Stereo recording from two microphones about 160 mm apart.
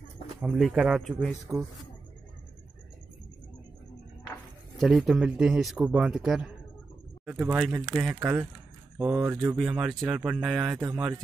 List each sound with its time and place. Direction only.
0.4 s a man's voice: 5° right (ahead or behind)
1.0 s a man's voice: 10° left (ahead or behind)
4.7 s a man's voice: centre (ahead or behind)
8.9 s speech: 15° right (ahead or behind)
9.6 s a man's voice: 5° right (ahead or behind)